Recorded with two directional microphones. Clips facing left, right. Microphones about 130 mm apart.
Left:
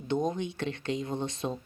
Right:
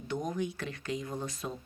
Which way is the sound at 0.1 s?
25° left (ahead or behind).